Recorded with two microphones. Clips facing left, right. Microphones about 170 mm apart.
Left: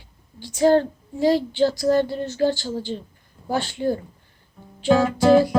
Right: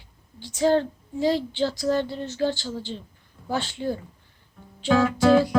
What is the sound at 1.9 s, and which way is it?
Speech, 45° left (ahead or behind).